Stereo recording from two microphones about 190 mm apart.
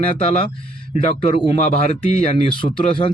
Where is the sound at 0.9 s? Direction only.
30° left (ahead or behind).